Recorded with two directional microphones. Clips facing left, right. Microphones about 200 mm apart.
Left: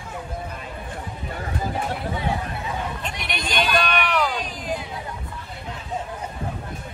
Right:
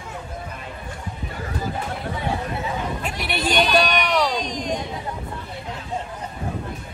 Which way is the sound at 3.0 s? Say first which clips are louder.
Right 4 dB; 5° right (ahead or behind).